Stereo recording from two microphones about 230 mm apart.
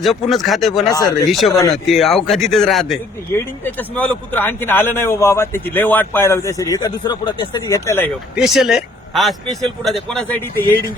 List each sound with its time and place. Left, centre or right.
0.0 s a man's voice: centre
0.9 s speech: centre
1.3 s a man's voice: centre
8.4 s a man's voice: centre